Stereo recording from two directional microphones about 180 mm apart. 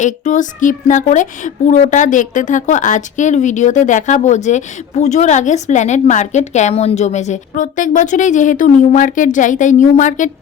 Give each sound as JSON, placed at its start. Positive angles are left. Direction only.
{"t": 0.0, "sound": "a woman's voice", "side_deg": 45}